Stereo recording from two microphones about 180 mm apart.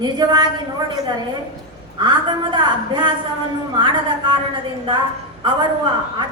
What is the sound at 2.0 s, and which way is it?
A woman's voice, 25° right (ahead or behind).